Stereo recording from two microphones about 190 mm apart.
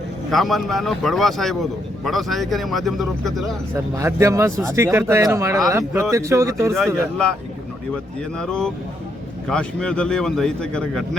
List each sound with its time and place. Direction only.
0.3 s a man's voice: centre (ahead or behind)
3.9 s speech: 15° right (ahead or behind)
6.7 s a man's voice: 5° left (ahead or behind)
8.4 s a man's voice: 5° left (ahead or behind)